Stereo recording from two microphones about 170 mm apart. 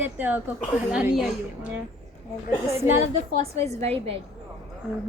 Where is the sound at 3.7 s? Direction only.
40° right (ahead or behind).